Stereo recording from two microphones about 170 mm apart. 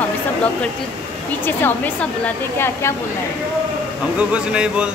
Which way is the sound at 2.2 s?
15° left (ahead or behind).